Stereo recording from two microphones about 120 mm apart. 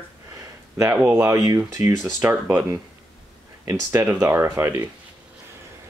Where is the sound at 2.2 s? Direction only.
15° right (ahead or behind).